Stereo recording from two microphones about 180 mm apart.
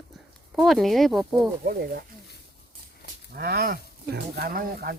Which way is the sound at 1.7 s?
60° right (ahead or behind).